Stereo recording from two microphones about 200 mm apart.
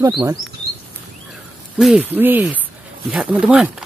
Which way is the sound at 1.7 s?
5° right (ahead or behind).